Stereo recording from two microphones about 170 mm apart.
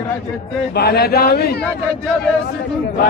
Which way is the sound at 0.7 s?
70° left (ahead or behind).